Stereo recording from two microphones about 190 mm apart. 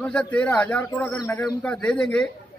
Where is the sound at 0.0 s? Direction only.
5° left (ahead or behind).